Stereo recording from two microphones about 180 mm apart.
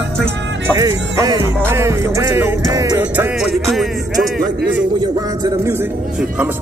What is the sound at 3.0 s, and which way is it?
Music, 10° right (ahead or behind).